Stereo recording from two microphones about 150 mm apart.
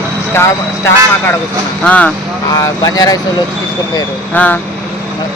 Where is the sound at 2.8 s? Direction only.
25° left (ahead or behind).